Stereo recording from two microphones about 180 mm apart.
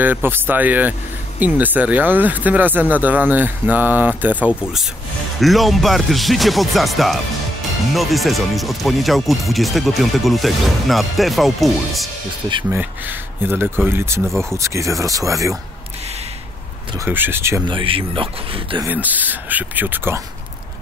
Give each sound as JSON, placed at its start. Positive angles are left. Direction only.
{"t": 0.0, "sound": "speech", "side_deg": -10}
{"t": 13.4, "sound": "speech", "side_deg": -10}
{"t": 17.0, "sound": "speech", "side_deg": -10}
{"t": 17.6, "sound": "speech", "side_deg": -30}
{"t": 18.9, "sound": "speech", "side_deg": -10}